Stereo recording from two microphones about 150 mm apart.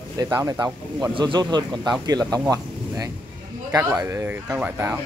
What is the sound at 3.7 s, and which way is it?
Speech, 20° right (ahead or behind).